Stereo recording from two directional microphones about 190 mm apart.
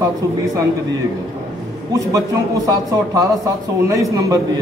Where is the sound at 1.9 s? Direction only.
20° right (ahead or behind).